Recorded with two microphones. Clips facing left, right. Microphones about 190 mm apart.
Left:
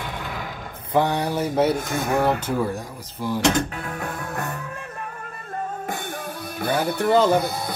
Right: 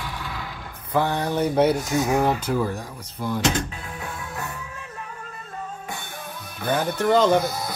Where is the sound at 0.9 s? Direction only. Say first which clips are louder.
Left 1 dB; 15° left (ahead or behind).